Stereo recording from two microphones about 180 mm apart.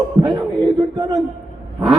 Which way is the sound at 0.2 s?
20° right (ahead or behind).